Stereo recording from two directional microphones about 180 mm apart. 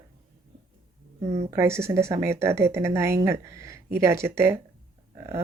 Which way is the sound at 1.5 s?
15° right (ahead or behind).